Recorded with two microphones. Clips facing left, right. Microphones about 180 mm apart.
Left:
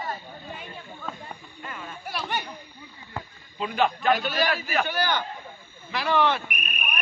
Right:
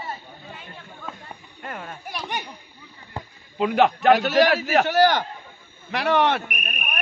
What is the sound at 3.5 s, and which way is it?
A man's voice, 70° right (ahead or behind).